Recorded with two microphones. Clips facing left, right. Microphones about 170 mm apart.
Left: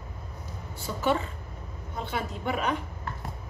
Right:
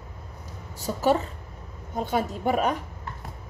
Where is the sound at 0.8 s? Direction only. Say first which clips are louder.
Right 4 dB; 40° right (ahead or behind).